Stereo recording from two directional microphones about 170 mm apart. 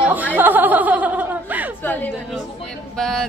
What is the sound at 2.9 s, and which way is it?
Speech, 5° left (ahead or behind).